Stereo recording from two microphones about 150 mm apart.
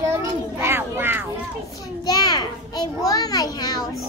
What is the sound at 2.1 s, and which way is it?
A child's voice, 25° left (ahead or behind).